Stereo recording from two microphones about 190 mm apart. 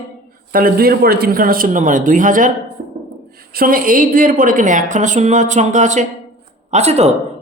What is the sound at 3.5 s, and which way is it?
A woman's voice, 50° right (ahead or behind).